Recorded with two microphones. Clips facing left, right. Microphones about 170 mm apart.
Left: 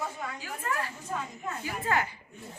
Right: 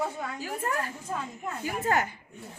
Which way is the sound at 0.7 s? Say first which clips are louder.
Left 1 dB; 45° right (ahead or behind).